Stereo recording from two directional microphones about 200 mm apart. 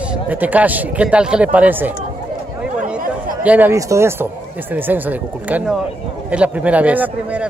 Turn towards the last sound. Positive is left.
turn(degrees=-5)  # may be behind; listen again after turning